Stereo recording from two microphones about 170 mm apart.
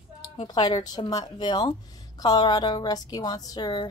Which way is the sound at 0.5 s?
25° left (ahead or behind).